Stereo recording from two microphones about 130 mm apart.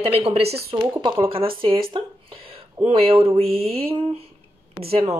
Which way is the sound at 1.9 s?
45° right (ahead or behind).